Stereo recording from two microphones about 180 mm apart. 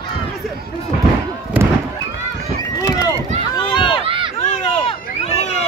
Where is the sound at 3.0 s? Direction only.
20° left (ahead or behind).